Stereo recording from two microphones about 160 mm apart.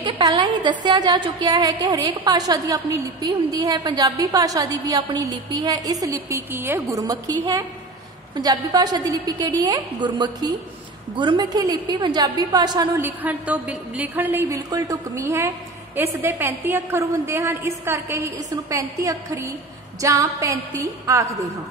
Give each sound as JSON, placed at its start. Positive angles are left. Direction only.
{"t": 0.0, "sound": "a woman's voice", "side_deg": -30}
{"t": 13.0, "sound": "a woman's voice", "side_deg": -10}